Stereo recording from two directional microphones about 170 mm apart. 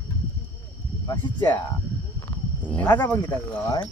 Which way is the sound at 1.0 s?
20° left (ahead or behind).